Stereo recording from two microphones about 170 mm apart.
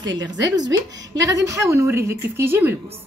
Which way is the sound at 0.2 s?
20° right (ahead or behind).